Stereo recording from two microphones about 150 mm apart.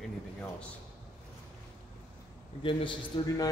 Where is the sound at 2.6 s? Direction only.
35° left (ahead or behind).